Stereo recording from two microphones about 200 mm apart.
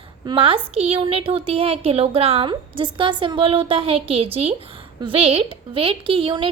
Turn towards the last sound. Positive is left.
turn(degrees=-25)  # may be behind; listen again after turning